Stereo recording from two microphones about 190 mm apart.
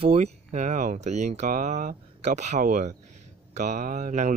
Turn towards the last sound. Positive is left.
turn(degrees=-40)  # may be behind; listen again after turning